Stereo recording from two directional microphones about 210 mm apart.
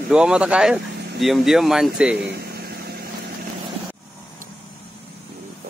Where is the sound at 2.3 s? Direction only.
45° right (ahead or behind).